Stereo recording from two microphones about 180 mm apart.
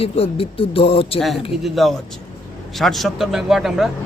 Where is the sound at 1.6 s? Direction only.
Centre (ahead or behind).